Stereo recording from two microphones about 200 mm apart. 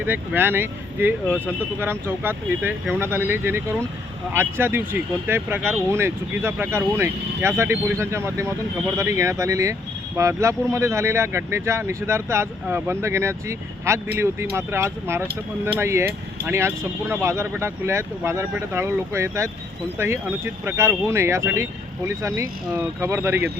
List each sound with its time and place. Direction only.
0.0 s speech: 10° right (ahead or behind)